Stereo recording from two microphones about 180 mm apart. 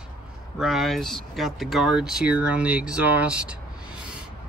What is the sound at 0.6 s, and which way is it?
Speech, centre (ahead or behind).